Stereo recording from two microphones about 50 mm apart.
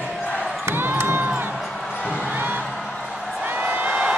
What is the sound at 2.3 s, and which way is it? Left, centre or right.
Music, right.